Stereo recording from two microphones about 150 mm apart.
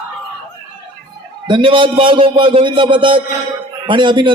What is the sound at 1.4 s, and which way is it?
A man's voice, 35° right (ahead or behind).